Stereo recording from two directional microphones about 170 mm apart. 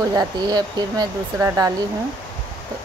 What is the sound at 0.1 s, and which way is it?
Speech, 20° right (ahead or behind).